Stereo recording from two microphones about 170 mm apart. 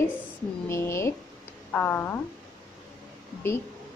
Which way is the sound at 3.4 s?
15° left (ahead or behind).